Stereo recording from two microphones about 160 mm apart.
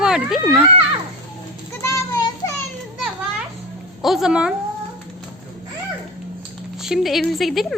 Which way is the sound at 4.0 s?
Centre (ahead or behind).